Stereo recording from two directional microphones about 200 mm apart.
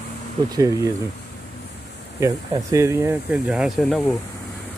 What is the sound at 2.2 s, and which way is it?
Speech, 15° right (ahead or behind).